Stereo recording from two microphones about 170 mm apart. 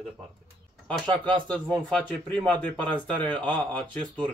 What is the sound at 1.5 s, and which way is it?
Speech, 5° left (ahead or behind).